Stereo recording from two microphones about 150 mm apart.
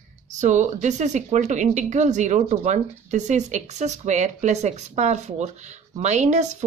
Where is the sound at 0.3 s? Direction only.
50° right (ahead or behind).